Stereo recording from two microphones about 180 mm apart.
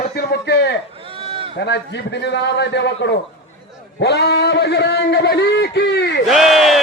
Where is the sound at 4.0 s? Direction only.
70° left (ahead or behind).